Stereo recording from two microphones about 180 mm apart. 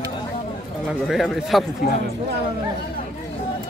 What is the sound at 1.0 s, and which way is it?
Speech, centre (ahead or behind).